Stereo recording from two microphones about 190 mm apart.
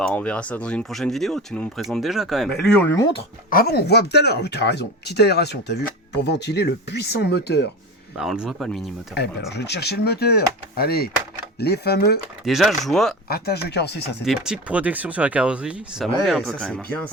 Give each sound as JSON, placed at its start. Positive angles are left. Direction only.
{"t": 0.0, "sound": "speech", "side_deg": 5}
{"t": 3.5, "sound": "speech", "side_deg": 55}
{"t": 8.1, "sound": "speech", "side_deg": -5}
{"t": 9.5, "sound": "speech", "side_deg": 60}
{"t": 12.5, "sound": "speech", "side_deg": 0}
{"t": 13.2, "sound": "speech", "side_deg": 55}
{"t": 14.3, "sound": "speech", "side_deg": -5}